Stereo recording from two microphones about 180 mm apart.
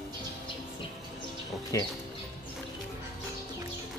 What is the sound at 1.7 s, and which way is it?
Speech, 15° left (ahead or behind).